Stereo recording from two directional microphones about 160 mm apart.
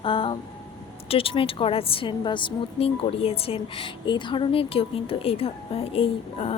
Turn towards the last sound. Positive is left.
turn(degrees=35)  # may be behind; listen again after turning